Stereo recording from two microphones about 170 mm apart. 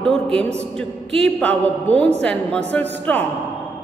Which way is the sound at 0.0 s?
5° left (ahead or behind).